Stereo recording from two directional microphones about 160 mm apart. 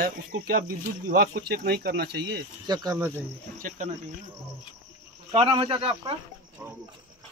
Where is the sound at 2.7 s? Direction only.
25° right (ahead or behind).